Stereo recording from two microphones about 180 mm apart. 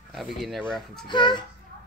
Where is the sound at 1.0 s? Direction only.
25° left (ahead or behind).